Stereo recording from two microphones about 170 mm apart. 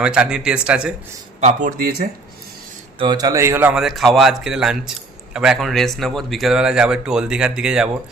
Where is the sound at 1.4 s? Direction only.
50° right (ahead or behind).